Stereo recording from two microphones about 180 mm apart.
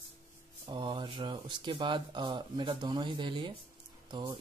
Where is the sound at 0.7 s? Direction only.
25° right (ahead or behind).